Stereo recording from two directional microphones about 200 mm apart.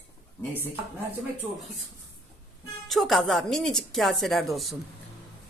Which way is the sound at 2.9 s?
Centre (ahead or behind).